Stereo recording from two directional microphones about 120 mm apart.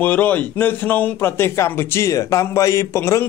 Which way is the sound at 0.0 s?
15° left (ahead or behind).